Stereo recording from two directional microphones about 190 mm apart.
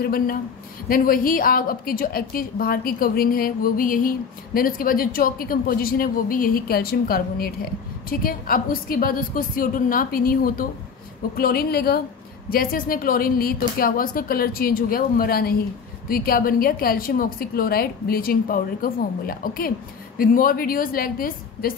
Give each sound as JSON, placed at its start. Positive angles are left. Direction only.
{"t": 0.0, "sound": "a woman's voice", "side_deg": 50}